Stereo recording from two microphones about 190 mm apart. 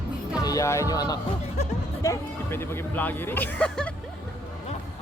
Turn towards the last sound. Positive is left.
turn(degrees=5)  # may be behind; listen again after turning